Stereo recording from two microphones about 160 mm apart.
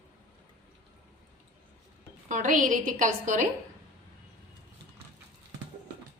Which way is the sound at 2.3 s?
55° right (ahead or behind).